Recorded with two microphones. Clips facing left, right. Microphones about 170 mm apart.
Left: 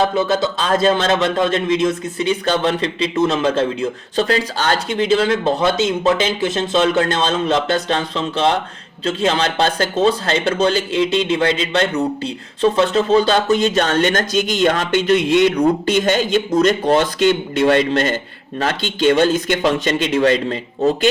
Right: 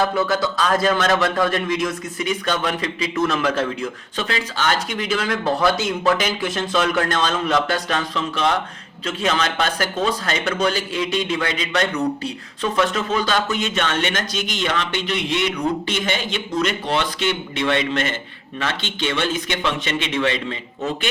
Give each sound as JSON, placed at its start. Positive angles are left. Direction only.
{"t": 0.0, "sound": "speech", "side_deg": 25}